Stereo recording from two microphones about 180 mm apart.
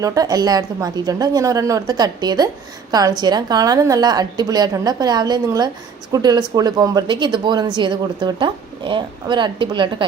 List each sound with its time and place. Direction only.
0.0 s a woman's voice: 20° right (ahead or behind)